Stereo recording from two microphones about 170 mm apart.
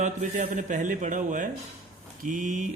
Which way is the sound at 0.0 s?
45° right (ahead or behind).